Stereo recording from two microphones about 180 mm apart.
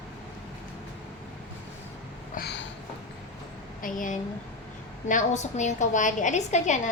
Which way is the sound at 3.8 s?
45° left (ahead or behind).